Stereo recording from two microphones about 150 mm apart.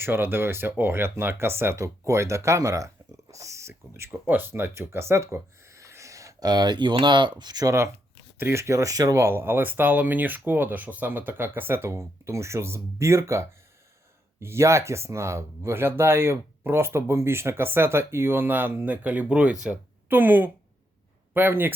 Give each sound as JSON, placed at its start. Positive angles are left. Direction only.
{"t": 0.0, "sound": "speech", "side_deg": -15}